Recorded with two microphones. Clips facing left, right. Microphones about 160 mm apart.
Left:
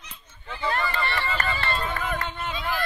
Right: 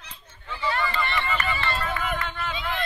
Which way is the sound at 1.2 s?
40° left (ahead or behind).